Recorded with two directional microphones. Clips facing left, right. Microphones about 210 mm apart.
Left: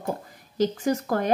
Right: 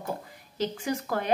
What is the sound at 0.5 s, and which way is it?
Speech, 45° left (ahead or behind).